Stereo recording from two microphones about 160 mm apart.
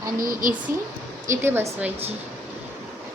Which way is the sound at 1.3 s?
15° right (ahead or behind).